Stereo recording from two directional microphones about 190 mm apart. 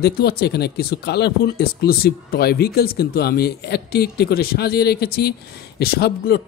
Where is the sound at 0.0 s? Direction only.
55° left (ahead or behind).